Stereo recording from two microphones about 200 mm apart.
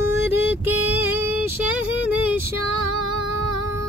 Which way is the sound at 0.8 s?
10° right (ahead or behind).